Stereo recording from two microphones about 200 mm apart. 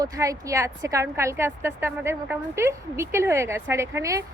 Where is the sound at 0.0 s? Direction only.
15° right (ahead or behind).